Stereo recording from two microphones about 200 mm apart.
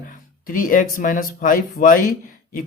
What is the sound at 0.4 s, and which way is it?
Speech, 45° left (ahead or behind).